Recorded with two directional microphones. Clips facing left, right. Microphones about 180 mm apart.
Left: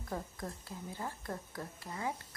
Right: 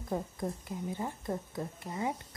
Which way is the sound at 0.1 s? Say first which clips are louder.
Right 6 dB; 25° right (ahead or behind).